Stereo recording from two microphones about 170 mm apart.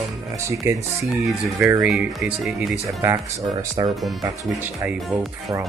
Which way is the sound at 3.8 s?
25° right (ahead or behind).